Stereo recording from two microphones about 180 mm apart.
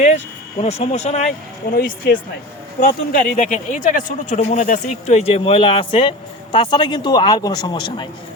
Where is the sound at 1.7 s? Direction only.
55° left (ahead or behind); by 8.1 s 25° left (ahead or behind).